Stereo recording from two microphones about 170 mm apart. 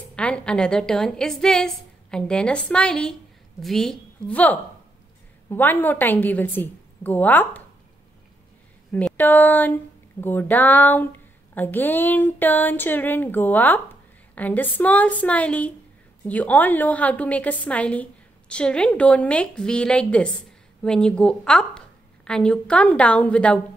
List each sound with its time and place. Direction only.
0.1 s a woman's voice: 5° left (ahead or behind)
8.9 s speech: 10° left (ahead or behind)